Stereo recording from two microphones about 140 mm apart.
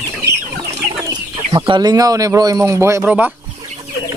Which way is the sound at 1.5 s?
30° right (ahead or behind).